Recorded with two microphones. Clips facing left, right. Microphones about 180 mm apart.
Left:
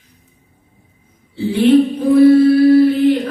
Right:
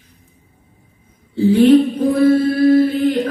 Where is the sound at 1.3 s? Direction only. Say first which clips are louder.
Right 2 dB; 45° right (ahead or behind).